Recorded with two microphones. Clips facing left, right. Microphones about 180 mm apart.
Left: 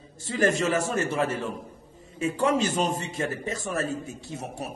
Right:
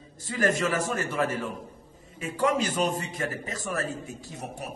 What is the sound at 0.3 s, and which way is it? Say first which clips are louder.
A man's voice: left 2 dB; 25° left (ahead or behind).